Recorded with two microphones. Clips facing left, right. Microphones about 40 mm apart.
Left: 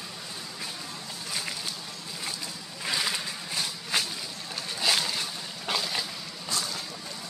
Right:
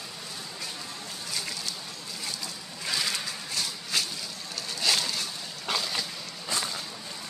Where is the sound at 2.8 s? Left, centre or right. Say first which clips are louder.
Left 1 dB; centre.